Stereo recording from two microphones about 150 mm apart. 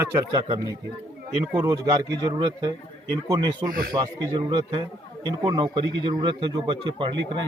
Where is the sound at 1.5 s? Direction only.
20° right (ahead or behind).